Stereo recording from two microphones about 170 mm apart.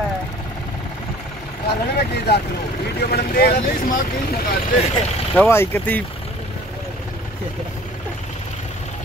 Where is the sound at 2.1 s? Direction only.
70° left (ahead or behind).